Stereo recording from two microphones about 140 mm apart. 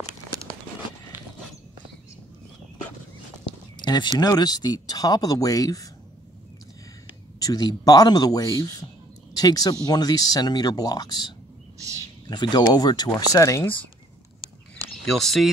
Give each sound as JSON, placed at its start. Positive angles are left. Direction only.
{"t": 1.1, "sound": "a sound", "side_deg": -15}
{"t": 3.7, "sound": "speech", "side_deg": 30}
{"t": 7.4, "sound": "speech", "side_deg": 25}
{"t": 15.0, "sound": "speech", "side_deg": 0}